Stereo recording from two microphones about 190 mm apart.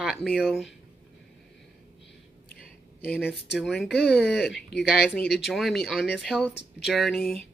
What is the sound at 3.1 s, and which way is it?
Speech, 10° left (ahead or behind).